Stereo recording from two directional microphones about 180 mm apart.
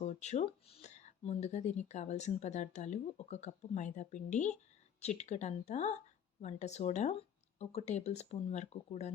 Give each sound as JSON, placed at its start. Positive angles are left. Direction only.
{"t": 0.0, "sound": "speech", "side_deg": 40}